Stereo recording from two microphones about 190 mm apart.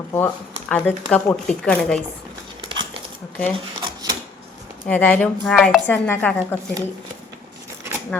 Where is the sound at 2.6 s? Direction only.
25° right (ahead or behind).